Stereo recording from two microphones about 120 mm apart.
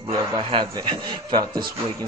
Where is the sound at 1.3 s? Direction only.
40° right (ahead or behind).